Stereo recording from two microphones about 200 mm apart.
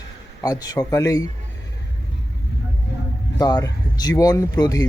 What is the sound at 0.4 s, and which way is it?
Speech, 20° left (ahead or behind).